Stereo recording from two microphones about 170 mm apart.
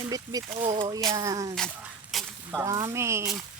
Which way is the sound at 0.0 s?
20° right (ahead or behind).